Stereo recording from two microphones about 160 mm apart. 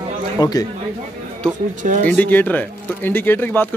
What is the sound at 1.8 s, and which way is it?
Speech, 55° right (ahead or behind).